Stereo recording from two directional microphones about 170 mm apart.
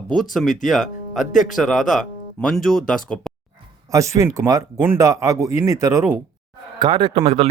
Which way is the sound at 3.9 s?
20° right (ahead or behind).